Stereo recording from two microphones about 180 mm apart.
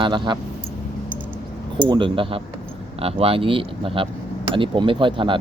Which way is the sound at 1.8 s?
25° right (ahead or behind).